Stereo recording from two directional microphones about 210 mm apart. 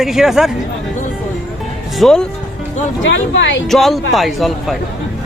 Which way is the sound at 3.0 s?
65° left (ahead or behind).